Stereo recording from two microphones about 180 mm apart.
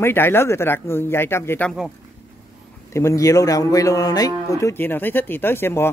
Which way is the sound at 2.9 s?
15° left (ahead or behind).